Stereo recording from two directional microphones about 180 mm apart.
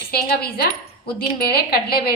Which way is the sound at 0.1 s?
60° left (ahead or behind).